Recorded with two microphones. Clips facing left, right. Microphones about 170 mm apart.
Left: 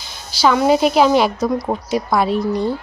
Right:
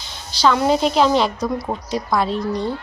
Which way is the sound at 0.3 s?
5° left (ahead or behind).